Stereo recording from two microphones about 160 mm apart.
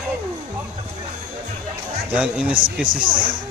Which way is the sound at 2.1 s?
5° right (ahead or behind).